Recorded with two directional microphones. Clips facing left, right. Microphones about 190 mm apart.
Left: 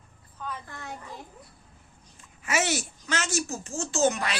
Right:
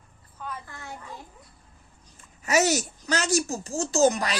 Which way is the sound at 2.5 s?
40° right (ahead or behind).